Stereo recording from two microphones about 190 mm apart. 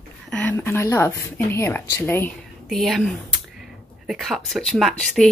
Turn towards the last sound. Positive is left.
turn(degrees=0)  # may be behind; listen again after turning